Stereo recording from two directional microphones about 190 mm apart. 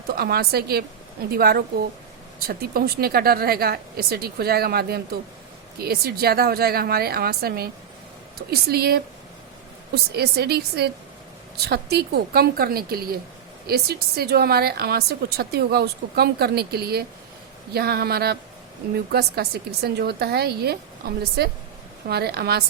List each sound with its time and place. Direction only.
0.2 s a woman's voice: 55° right (ahead or behind)